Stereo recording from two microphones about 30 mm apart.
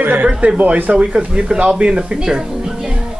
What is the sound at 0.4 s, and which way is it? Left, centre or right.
Speech, right.